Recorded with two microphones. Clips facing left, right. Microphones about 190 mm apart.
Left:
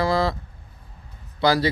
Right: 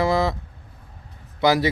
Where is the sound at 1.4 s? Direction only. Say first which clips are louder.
Right 1 dB; 20° right (ahead or behind).